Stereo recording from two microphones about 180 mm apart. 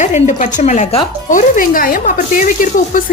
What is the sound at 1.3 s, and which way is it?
A woman's voice, 50° left (ahead or behind).